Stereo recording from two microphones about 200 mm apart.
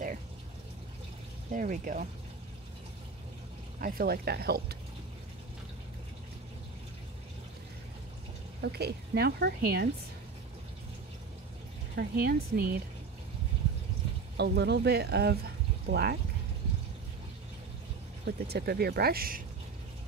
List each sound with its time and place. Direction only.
1.5 s speech: 40° right (ahead or behind)
3.8 s a woman's voice: 50° right (ahead or behind)
8.5 s a woman's voice: 55° right (ahead or behind)
11.9 s a woman's voice: 55° right (ahead or behind)
14.3 s speech: 55° right (ahead or behind)
18.2 s a woman's voice: 55° right (ahead or behind)